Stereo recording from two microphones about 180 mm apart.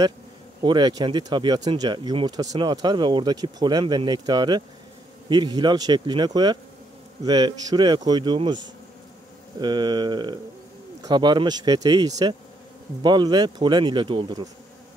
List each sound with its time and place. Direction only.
0.6 s speech: 25° right (ahead or behind)
9.6 s speech: 25° right (ahead or behind)